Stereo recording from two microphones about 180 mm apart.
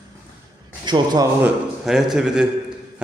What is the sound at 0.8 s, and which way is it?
Speech, 25° right (ahead or behind).